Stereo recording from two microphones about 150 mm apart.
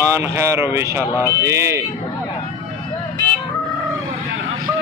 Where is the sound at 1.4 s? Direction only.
20° right (ahead or behind).